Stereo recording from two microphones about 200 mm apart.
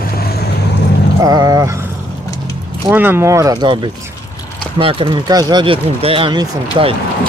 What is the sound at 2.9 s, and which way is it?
Speech, 10° right (ahead or behind).